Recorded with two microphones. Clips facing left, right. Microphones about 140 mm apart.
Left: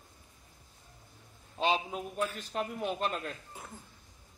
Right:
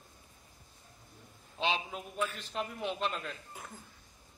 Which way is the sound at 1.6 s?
45° left (ahead or behind).